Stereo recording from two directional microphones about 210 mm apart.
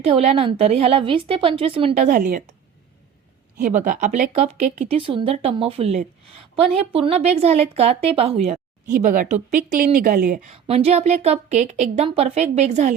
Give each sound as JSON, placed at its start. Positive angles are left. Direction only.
{"t": 0.0, "sound": "a woman's voice", "side_deg": -30}
{"t": 3.6, "sound": "a woman's voice", "side_deg": -35}
{"t": 10.5, "sound": "a woman's voice", "side_deg": -30}